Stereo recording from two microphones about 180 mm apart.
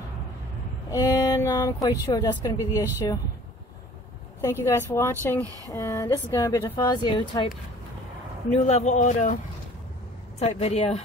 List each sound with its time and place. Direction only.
0.8 s speech: 20° left (ahead or behind)
4.4 s a woman's voice: 15° left (ahead or behind)
8.6 s a man's voice: 40° left (ahead or behind)
10.4 s a man's voice: 35° left (ahead or behind)